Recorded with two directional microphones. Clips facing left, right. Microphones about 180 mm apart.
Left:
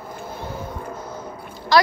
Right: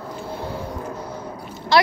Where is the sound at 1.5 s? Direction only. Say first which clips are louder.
Even; 25° right (ahead or behind).